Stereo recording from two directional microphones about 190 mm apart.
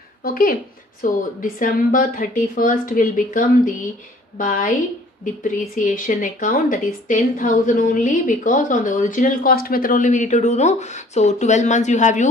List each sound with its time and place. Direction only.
0.2 s a woman's voice: 50° left (ahead or behind)